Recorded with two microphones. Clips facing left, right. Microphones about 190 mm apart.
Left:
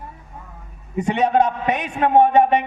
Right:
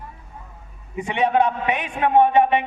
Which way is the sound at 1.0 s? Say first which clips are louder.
Left 2 dB; 40° left (ahead or behind).